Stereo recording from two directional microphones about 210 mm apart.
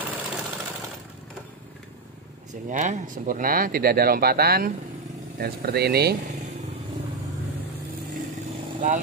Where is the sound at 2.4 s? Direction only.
35° right (ahead or behind).